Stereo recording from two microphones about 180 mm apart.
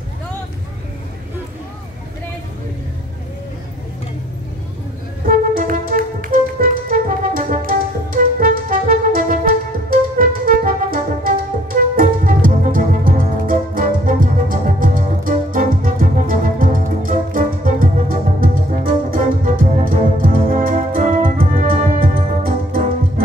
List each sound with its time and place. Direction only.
5.2 s music: 50° right (ahead or behind)